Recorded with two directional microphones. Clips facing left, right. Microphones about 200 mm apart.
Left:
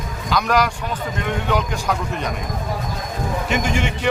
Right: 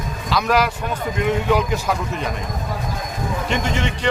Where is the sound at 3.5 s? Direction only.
5° left (ahead or behind).